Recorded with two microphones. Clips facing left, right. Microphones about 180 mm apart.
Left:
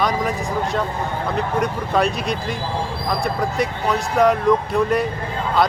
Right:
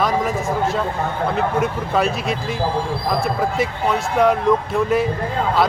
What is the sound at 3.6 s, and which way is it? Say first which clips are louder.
Speech: right 1 dB; centre (ahead or behind).